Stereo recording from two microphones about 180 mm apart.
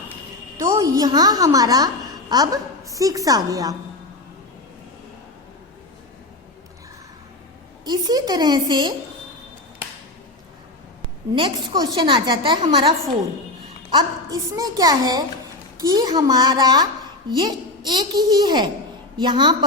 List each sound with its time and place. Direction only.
0.6 s a woman's voice: 20° right (ahead or behind)
7.9 s a woman's voice: 20° right (ahead or behind)
11.3 s a woman's voice: 25° right (ahead or behind)
13.9 s a woman's voice: 20° right (ahead or behind)